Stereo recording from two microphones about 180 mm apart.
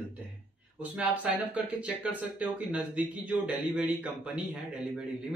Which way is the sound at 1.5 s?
5° right (ahead or behind).